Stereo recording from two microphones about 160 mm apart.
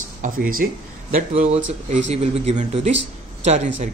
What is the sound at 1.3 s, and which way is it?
Speech, 45° right (ahead or behind).